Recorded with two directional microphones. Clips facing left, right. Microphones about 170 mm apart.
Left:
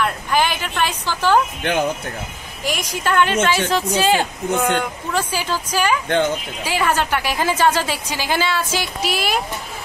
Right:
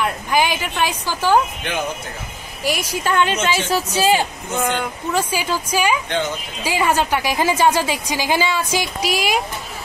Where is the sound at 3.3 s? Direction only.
50° left (ahead or behind).